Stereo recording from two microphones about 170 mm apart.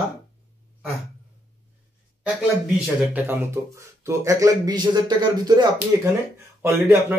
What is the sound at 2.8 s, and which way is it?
Speech, 5° right (ahead or behind).